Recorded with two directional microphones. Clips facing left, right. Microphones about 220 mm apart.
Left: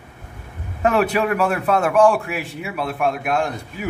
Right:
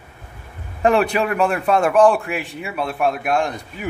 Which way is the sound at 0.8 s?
5° left (ahead or behind).